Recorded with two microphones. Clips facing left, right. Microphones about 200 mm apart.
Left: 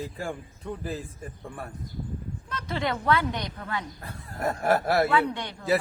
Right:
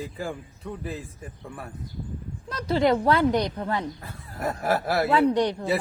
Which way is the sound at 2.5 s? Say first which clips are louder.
Right 8 dB; 35° right (ahead or behind).